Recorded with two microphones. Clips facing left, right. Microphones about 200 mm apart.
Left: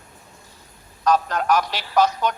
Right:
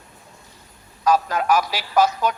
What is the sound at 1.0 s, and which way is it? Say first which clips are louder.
Speech: right 1 dB; 10° right (ahead or behind).